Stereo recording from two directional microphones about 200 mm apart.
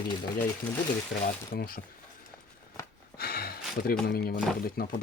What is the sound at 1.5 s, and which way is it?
Speech, 45° left (ahead or behind).